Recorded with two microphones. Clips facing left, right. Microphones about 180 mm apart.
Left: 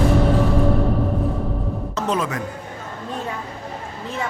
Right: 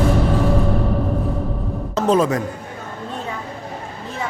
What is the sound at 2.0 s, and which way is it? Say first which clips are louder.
Speech: right 7 dB; 30° right (ahead or behind).